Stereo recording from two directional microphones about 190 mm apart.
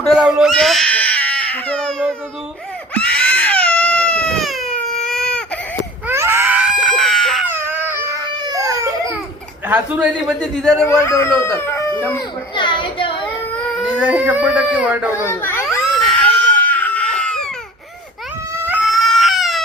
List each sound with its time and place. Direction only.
0.0 s baby cry: centre (ahead or behind)
6.1 s baby cry: 10° right (ahead or behind)
7.4 s baby cry: 10° right (ahead or behind)
9.6 s a man's voice: 5° right (ahead or behind)
10.4 s a man's voice: 5° left (ahead or behind)
12.5 s a sound: 25° left (ahead or behind)
13.7 s speech: centre (ahead or behind)
15.2 s a child's voice: 10° left (ahead or behind)
16.6 s crying: 10° left (ahead or behind)
18.7 s baby cry: 5° right (ahead or behind)